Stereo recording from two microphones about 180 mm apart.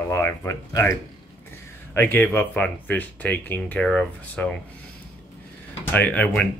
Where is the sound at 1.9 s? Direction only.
10° left (ahead or behind).